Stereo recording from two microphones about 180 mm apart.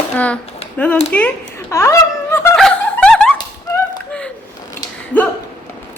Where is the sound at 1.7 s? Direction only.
15° left (ahead or behind).